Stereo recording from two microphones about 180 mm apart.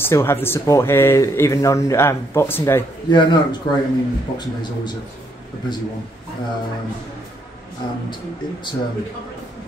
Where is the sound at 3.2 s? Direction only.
25° left (ahead or behind).